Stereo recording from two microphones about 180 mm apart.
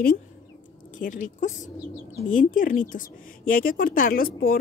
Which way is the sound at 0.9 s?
45° left (ahead or behind).